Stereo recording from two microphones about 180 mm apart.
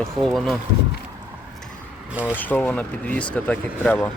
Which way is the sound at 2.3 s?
10° left (ahead or behind).